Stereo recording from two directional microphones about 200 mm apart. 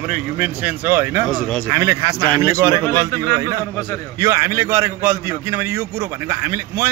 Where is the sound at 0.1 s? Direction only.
5° right (ahead or behind).